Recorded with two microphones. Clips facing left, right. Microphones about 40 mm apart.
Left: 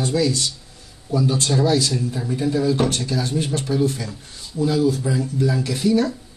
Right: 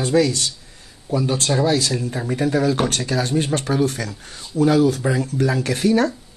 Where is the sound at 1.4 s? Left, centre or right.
Right.